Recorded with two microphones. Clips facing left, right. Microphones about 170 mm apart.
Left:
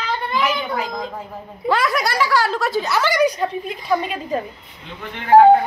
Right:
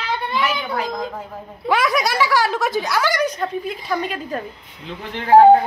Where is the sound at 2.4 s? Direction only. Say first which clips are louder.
Even; 15° right (ahead or behind).